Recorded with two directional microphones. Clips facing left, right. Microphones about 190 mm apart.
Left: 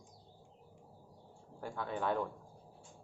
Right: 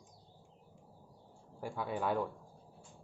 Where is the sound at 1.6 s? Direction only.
10° right (ahead or behind).